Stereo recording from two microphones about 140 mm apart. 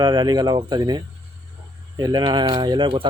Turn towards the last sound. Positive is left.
turn(degrees=-35)  # may be behind; listen again after turning